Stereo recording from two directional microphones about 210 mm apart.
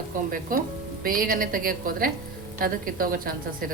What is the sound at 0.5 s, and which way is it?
A woman's voice, 40° right (ahead or behind).